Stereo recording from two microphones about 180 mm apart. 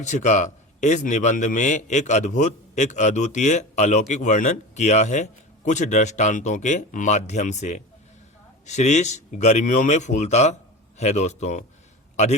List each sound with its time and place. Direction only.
0.0 s a man's voice: 40° left (ahead or behind)